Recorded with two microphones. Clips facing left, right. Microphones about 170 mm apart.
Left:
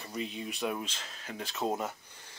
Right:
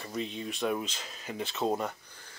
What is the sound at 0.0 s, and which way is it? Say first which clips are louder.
Speech: right 2 dB; 5° left (ahead or behind).